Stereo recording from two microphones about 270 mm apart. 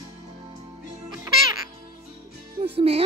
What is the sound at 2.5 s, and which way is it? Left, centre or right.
Music, right.